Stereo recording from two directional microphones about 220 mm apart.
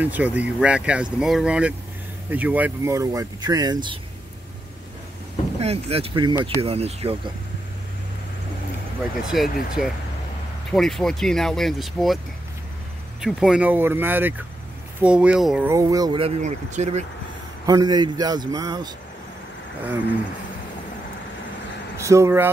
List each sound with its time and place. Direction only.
0.0 s speech: 5° right (ahead or behind)
5.6 s speech: 30° right (ahead or behind)
9.3 s speech: centre (ahead or behind)
13.2 s speech: 5° right (ahead or behind); by 17.0 s 30° right (ahead or behind)
17.6 s speech: 20° right (ahead or behind)
21.9 s speech: 15° right (ahead or behind)